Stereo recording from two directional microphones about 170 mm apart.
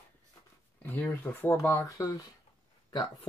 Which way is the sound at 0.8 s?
10° left (ahead or behind).